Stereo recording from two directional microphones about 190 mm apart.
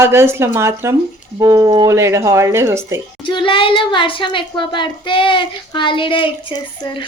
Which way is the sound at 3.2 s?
25° left (ahead or behind).